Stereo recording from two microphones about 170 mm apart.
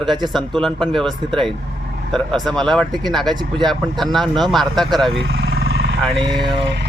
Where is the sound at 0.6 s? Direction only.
Centre (ahead or behind).